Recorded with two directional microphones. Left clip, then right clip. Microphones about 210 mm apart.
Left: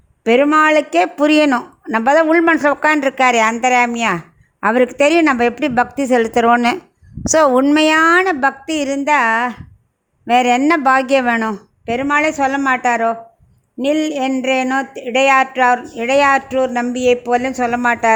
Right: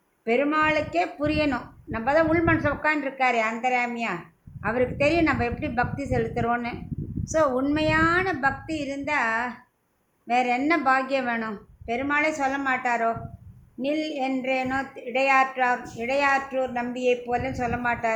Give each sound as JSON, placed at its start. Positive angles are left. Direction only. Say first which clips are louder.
{"t": 0.3, "sound": "speech", "louder": "left 11 dB", "side_deg": 50}